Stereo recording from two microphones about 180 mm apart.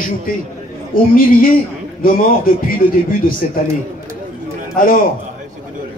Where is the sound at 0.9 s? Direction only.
50° left (ahead or behind).